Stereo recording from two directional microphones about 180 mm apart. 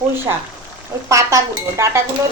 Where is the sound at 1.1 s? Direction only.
15° right (ahead or behind).